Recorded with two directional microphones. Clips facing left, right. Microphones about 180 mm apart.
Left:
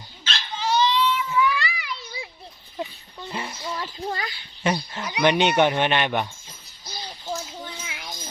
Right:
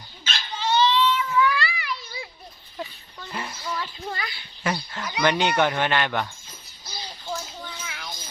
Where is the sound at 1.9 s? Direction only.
25° left (ahead or behind).